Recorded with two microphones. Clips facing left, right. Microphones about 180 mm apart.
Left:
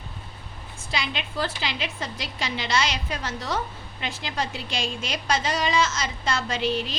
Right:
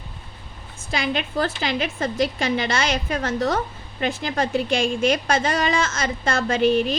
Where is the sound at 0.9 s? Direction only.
50° right (ahead or behind).